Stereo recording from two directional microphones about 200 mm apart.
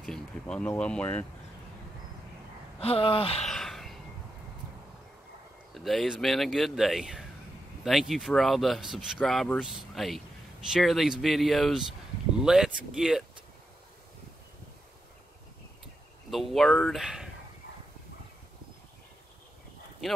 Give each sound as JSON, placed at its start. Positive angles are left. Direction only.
{"t": 0.0, "sound": "speech", "side_deg": 5}
{"t": 2.8, "sound": "speech", "side_deg": 30}
{"t": 3.4, "sound": "a sound", "side_deg": 0}
{"t": 5.8, "sound": "speech", "side_deg": 0}
{"t": 16.3, "sound": "speech", "side_deg": 0}